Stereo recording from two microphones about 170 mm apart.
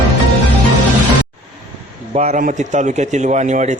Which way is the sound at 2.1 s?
40° right (ahead or behind).